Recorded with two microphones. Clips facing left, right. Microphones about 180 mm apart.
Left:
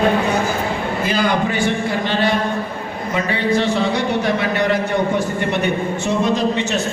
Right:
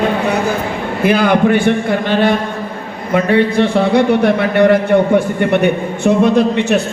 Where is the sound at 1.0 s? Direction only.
60° right (ahead or behind).